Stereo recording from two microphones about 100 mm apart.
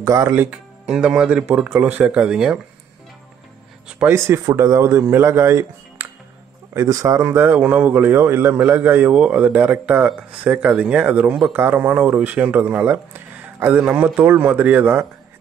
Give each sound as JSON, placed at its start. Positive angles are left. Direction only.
{"t": 0.0, "sound": "speech", "side_deg": -30}
{"t": 0.5, "sound": "speech", "side_deg": -10}
{"t": 4.1, "sound": "speech", "side_deg": -30}